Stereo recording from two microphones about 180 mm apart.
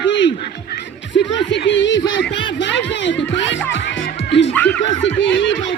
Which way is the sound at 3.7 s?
90° left.